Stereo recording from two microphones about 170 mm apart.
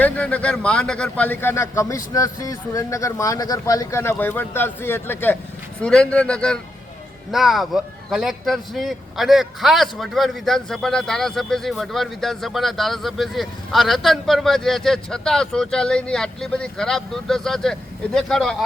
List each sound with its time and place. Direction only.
0.0 s a man's voice: 10° left (ahead or behind)